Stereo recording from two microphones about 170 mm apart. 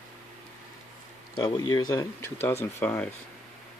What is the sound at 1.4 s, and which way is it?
Speech, 25° left (ahead or behind).